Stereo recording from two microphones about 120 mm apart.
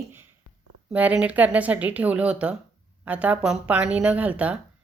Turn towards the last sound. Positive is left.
turn(degrees=-10)  # may be behind; listen again after turning